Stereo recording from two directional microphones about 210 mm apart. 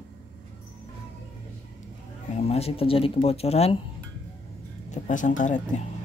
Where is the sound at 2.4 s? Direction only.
30° left (ahead or behind).